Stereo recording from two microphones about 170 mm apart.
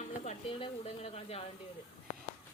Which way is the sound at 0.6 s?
35° left (ahead or behind).